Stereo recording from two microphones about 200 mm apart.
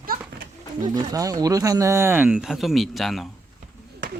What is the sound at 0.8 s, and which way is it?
Speech, 15° right (ahead or behind).